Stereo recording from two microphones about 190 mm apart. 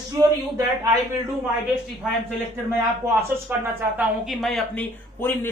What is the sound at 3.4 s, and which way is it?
A woman's voice, 10° right (ahead or behind).